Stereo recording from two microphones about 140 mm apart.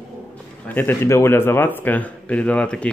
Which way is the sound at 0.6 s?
15° left (ahead or behind).